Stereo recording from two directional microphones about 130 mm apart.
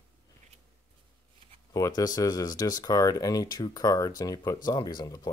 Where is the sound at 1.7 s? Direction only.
30° left (ahead or behind).